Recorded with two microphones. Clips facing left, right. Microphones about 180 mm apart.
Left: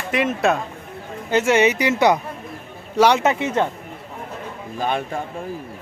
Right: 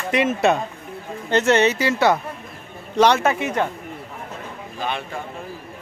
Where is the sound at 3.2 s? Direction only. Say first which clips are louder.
Left 1 dB; 20° left (ahead or behind).